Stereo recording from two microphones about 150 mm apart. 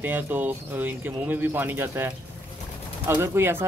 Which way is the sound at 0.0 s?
15° right (ahead or behind).